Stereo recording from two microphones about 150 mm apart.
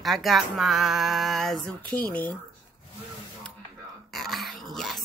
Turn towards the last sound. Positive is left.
turn(degrees=0)  # may be behind; listen again after turning